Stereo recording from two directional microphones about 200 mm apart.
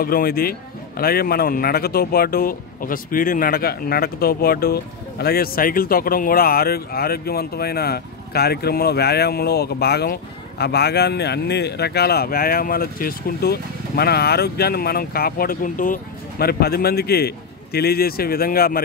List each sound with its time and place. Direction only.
0.0 s a man's voice: 50° left (ahead or behind)